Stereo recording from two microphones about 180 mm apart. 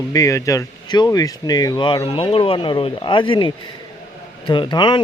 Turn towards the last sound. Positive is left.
turn(degrees=25)  # may be behind; listen again after turning